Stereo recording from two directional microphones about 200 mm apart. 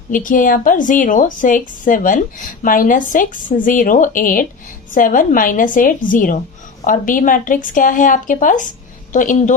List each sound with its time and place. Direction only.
0.1 s a woman's voice: 40° left (ahead or behind)